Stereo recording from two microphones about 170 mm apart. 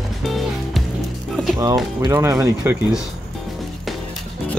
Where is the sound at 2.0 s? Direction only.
20° right (ahead or behind).